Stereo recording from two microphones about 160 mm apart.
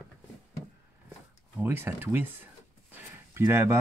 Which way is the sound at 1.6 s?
15° right (ahead or behind).